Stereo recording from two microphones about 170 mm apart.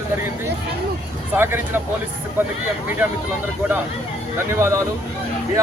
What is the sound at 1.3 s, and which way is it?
Speech, 10° right (ahead or behind).